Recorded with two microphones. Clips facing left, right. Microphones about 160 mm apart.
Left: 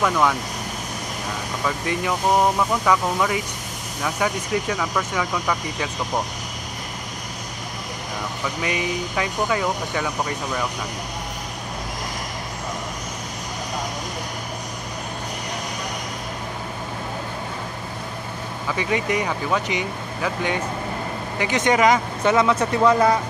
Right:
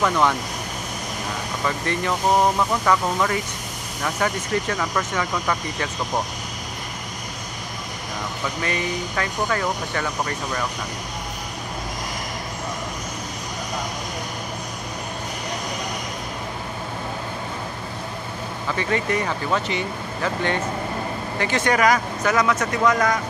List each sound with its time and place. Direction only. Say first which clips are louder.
0.0 s speech: even; centre (ahead or behind)
2.8 s speech: even; 5° left (ahead or behind)
8.6 s speech: left 1 dB; 10° left (ahead or behind)
18.8 s speech: even; 15° left (ahead or behind); by 23.1 s 30° left (ahead or behind)